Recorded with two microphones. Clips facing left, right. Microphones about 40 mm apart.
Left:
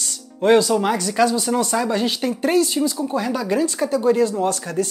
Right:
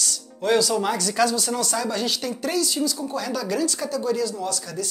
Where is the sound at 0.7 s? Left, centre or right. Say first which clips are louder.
Left 3 dB; centre.